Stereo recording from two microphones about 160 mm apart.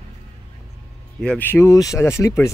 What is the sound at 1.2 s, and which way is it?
Speech, 10° left (ahead or behind).